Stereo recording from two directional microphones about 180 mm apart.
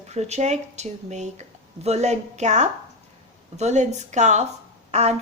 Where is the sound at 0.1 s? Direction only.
40° right (ahead or behind).